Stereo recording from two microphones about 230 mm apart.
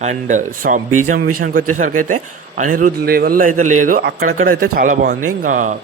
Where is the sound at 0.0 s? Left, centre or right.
Right.